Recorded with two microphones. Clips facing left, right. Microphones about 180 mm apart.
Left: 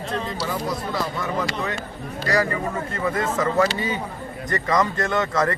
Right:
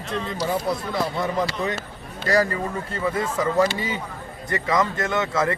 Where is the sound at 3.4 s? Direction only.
15° right (ahead or behind).